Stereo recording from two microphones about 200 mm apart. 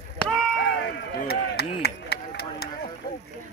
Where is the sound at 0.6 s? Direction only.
55° left (ahead or behind).